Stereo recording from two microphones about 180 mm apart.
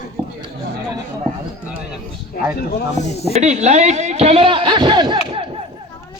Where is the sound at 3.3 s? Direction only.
40° right (ahead or behind).